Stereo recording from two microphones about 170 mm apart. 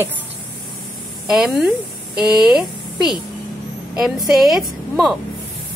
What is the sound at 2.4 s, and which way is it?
Speech, 5° right (ahead or behind).